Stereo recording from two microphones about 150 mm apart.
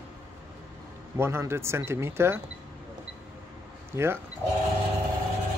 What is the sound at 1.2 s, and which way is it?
Speech, 15° right (ahead or behind).